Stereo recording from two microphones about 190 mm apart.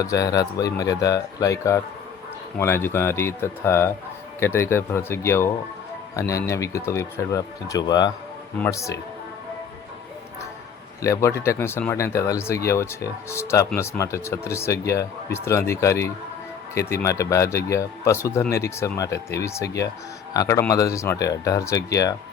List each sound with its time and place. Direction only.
0.0 s speech: 20° left (ahead or behind)
11.0 s speech: 15° left (ahead or behind)